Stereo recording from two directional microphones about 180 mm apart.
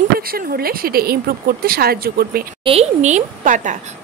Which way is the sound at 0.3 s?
55° right (ahead or behind).